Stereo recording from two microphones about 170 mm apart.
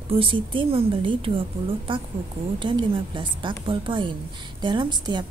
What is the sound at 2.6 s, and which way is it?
A woman's voice, 30° right (ahead or behind).